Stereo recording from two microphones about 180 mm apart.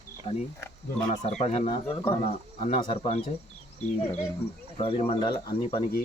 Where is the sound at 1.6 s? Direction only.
25° left (ahead or behind).